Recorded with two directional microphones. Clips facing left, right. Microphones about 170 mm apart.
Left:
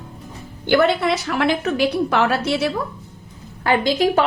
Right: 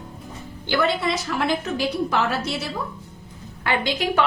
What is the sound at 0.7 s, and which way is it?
A woman's voice, 60° left (ahead or behind).